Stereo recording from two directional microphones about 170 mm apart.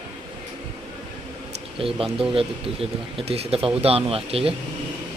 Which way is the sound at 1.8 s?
30° right (ahead or behind).